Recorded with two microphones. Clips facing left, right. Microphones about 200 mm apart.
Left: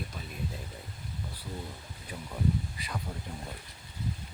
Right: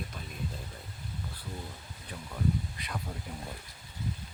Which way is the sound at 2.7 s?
Centre (ahead or behind).